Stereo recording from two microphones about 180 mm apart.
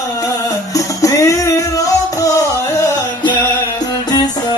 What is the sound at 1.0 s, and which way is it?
Music, 20° left (ahead or behind).